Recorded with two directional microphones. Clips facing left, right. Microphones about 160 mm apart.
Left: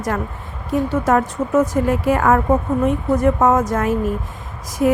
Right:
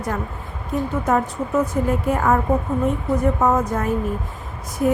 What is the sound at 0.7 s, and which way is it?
A woman's voice, 85° left.